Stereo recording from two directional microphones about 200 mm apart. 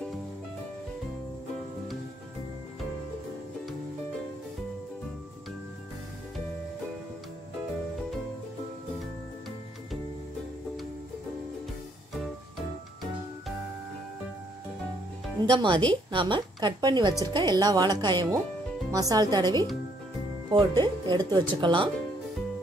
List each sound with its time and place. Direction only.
15.4 s a woman's voice: 20° right (ahead or behind)